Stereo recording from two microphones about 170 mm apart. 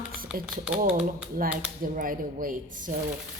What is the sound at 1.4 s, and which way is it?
A woman's voice, 55° right (ahead or behind).